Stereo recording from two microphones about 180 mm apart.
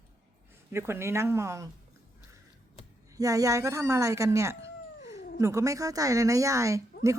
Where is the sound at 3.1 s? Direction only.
20° right (ahead or behind).